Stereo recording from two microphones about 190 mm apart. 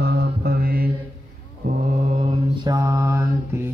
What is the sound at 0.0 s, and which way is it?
Mantra, 55° right (ahead or behind).